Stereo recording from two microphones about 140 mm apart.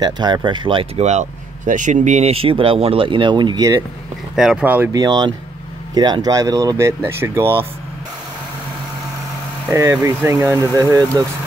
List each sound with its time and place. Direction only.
0.0 s speech: 30° right (ahead or behind)
1.7 s speech: 65° right (ahead or behind); by 3.7 s 30° right (ahead or behind)
4.4 s speech: 5° right (ahead or behind)
4.9 s speech: 30° right (ahead or behind)
9.7 s speech: 20° right (ahead or behind)